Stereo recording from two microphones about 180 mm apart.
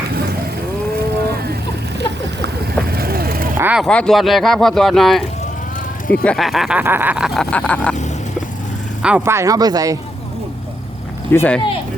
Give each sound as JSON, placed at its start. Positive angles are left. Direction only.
{"t": 2.0, "sound": "vehicle", "side_deg": -65}
{"t": 3.6, "sound": "a sound", "side_deg": -10}
{"t": 3.8, "sound": "speech", "side_deg": 5}
{"t": 9.0, "sound": "speech", "side_deg": -5}
{"t": 11.3, "sound": "speech", "side_deg": 10}